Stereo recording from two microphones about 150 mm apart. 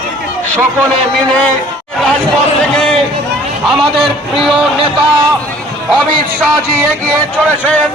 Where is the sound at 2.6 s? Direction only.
5° left (ahead or behind).